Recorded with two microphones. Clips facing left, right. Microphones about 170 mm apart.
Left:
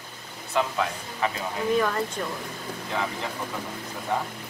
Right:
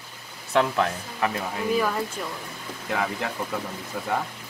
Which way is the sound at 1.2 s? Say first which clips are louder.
Even; 5° right (ahead or behind).